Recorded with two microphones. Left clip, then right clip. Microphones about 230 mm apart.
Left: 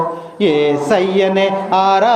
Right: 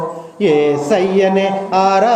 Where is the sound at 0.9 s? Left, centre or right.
Centre.